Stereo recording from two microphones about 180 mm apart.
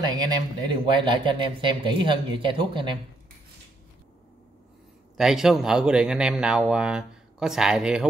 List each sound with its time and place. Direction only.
0.0 s speech: 25° right (ahead or behind)
5.1 s speech: centre (ahead or behind)